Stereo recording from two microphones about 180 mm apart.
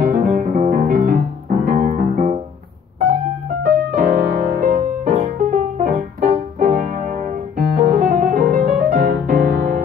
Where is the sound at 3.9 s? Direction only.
45° right (ahead or behind).